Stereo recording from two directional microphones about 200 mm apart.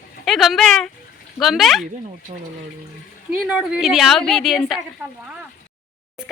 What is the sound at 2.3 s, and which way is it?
Speech, 25° right (ahead or behind).